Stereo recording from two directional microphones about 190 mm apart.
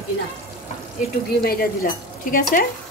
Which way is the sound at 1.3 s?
50° left (ahead or behind).